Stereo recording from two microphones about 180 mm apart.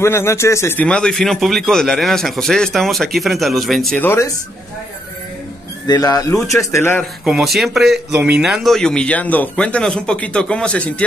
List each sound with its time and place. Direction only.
0.0 s speech: 15° left (ahead or behind)
5.9 s a man's voice: 20° left (ahead or behind)
7.2 s speech: centre (ahead or behind)